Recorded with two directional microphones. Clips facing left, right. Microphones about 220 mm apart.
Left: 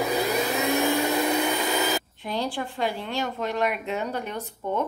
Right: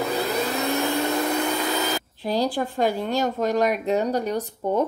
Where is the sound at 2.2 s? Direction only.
40° right (ahead or behind).